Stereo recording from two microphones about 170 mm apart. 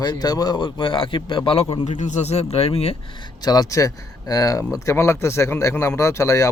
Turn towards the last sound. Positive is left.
turn(degrees=15)  # may be behind; listen again after turning